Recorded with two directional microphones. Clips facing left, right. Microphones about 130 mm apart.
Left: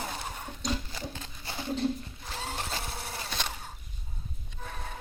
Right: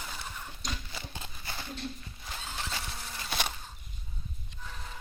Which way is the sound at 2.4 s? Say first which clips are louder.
Left 4 dB; 65° left (ahead or behind).